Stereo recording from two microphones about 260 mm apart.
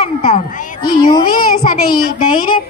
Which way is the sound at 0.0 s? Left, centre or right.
Left.